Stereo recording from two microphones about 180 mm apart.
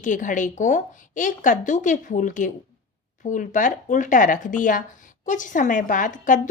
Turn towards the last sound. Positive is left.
turn(degrees=45)  # may be behind; listen again after turning